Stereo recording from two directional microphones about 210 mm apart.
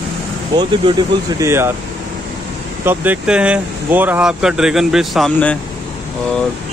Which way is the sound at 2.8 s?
10° right (ahead or behind).